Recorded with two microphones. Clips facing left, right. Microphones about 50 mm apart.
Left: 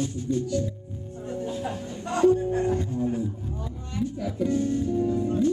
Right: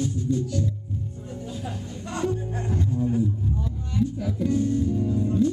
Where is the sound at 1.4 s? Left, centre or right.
Left.